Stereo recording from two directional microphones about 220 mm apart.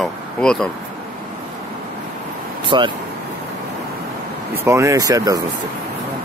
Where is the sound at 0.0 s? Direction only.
5° left (ahead or behind).